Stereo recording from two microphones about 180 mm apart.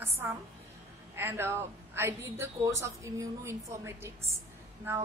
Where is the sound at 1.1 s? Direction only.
10° right (ahead or behind).